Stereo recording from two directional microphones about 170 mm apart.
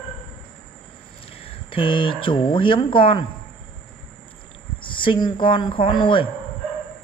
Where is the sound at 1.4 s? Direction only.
30° left (ahead or behind).